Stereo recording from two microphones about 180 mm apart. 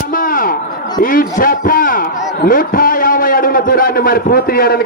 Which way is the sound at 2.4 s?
55° left (ahead or behind).